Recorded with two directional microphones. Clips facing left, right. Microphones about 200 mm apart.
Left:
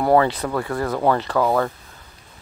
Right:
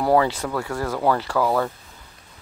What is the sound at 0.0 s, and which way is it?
Speech, 10° right (ahead or behind).